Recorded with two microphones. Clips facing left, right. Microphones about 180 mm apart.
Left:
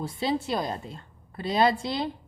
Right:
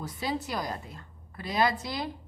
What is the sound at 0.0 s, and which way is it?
Speech, 25° left (ahead or behind).